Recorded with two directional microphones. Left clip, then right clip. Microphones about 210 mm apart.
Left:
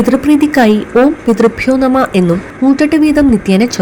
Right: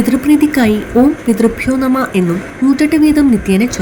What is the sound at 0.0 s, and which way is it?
A woman's voice, 15° left (ahead or behind).